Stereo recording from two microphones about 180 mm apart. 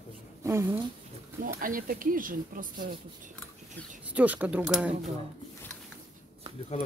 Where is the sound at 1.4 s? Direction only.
50° right (ahead or behind).